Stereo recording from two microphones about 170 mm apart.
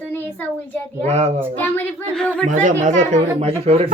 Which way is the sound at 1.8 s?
5° left (ahead or behind).